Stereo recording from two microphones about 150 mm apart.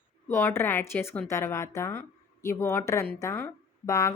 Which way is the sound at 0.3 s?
15° left (ahead or behind).